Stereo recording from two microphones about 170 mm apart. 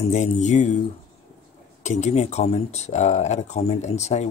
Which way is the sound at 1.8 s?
40° left (ahead or behind).